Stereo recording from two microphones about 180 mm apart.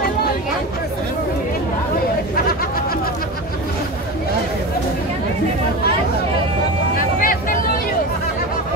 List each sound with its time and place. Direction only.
7.2 s vehicle: 50° left (ahead or behind)